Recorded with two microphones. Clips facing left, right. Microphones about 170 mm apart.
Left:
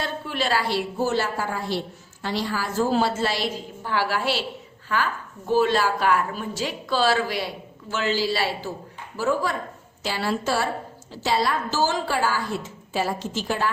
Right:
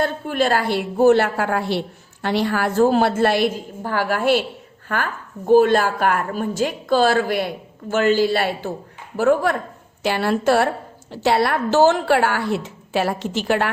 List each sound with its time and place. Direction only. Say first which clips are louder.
0.0 s a woman's voice: right 7 dB; 50° right (ahead or behind); by 13.7 s 65° right (ahead or behind)